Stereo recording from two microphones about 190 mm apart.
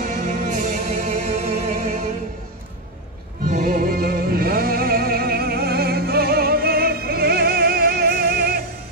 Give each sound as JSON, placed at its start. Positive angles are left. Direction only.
{"t": 0.0, "sound": "music", "side_deg": -45}
{"t": 3.4, "sound": "music", "side_deg": -45}